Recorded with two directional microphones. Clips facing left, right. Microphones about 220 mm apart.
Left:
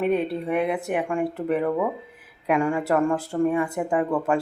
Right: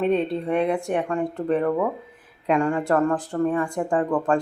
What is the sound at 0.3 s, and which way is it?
Speech, 5° left (ahead or behind).